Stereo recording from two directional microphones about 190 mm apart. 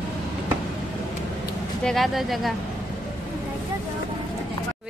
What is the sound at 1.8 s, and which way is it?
Speech, centre (ahead or behind).